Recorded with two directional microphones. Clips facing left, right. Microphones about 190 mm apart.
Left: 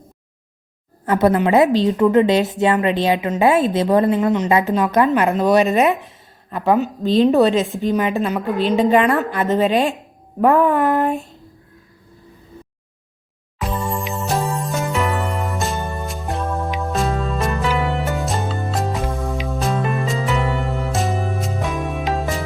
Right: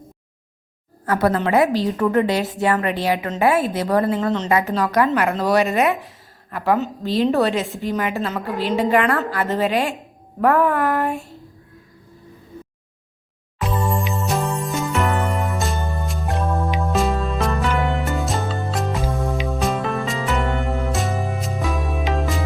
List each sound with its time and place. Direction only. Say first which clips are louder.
1.0 s a woman's voice: left 3 dB; 20° left (ahead or behind)
13.6 s music: right 1 dB; centre (ahead or behind)